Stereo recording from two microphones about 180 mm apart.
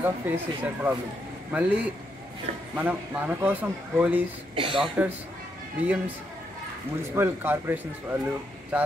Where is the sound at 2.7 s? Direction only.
10° right (ahead or behind).